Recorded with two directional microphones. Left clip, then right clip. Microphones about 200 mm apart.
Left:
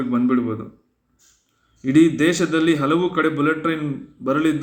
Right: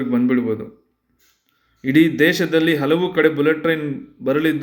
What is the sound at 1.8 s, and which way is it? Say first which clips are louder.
A man's voice: right 1 dB; 20° right (ahead or behind).